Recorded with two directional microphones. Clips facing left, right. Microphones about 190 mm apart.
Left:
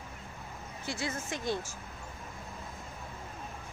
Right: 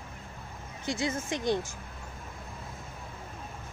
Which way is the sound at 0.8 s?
20° right (ahead or behind).